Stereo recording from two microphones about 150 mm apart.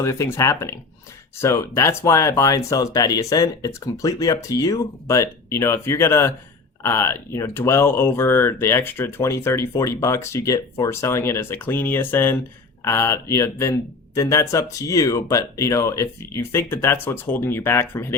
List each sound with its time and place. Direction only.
0.0 s speech: 20° left (ahead or behind)